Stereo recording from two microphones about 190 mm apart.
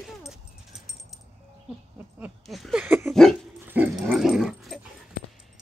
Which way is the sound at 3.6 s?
10° right (ahead or behind).